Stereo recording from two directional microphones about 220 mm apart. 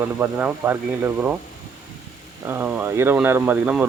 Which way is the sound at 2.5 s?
10° right (ahead or behind).